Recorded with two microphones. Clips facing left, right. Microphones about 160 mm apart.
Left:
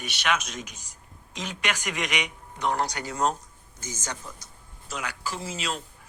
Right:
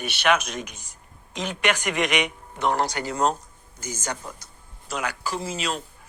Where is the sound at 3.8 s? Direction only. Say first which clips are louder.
Right 5 dB; 60° right (ahead or behind).